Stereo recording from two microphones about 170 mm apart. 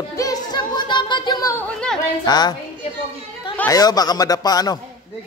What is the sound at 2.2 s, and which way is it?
Speech, 25° left (ahead or behind).